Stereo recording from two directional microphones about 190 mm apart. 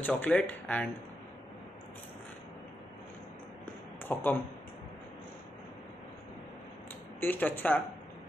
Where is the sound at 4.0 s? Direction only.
10° left (ahead or behind).